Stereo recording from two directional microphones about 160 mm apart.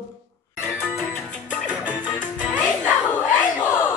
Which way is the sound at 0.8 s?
10° left (ahead or behind).